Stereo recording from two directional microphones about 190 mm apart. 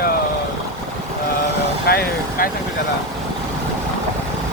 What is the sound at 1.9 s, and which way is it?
Speech, 55° left (ahead or behind).